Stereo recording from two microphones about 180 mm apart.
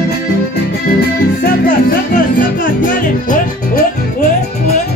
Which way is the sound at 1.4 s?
50° left (ahead or behind).